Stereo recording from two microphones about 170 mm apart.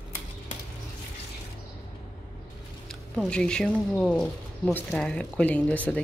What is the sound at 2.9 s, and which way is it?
Speech, 5° left (ahead or behind).